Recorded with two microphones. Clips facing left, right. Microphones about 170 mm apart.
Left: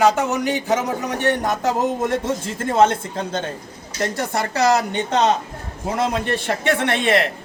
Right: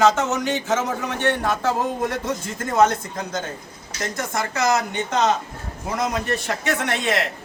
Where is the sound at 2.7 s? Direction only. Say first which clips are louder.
Left 1 dB; 30° left (ahead or behind).